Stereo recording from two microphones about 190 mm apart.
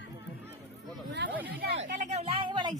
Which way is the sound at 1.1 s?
65° right (ahead or behind).